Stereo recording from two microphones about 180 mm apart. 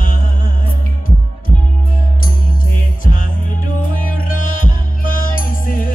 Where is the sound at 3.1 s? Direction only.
50° left (ahead or behind).